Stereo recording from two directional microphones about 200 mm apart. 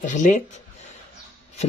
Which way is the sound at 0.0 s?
40° left (ahead or behind).